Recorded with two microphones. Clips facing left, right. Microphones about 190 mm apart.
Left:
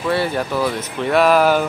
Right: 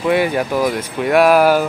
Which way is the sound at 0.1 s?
10° right (ahead or behind).